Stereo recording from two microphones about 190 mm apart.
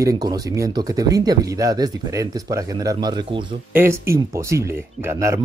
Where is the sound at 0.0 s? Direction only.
20° right (ahead or behind).